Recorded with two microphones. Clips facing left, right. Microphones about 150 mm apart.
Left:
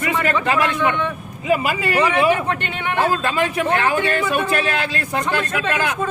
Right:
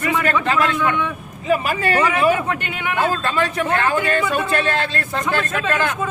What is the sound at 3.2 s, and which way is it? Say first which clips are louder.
Speech: left 1 dB; 20° left (ahead or behind).